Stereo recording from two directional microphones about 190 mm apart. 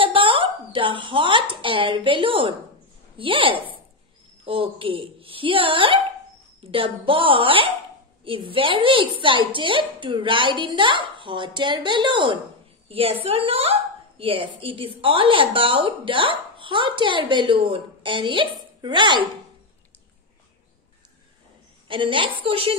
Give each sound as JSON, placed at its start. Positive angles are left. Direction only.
{"t": 0.0, "sound": "a woman's voice", "side_deg": -25}
{"t": 21.8, "sound": "a woman's voice", "side_deg": -25}